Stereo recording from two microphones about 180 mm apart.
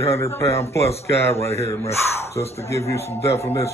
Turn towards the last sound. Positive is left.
turn(degrees=15)  # may be behind; listen again after turning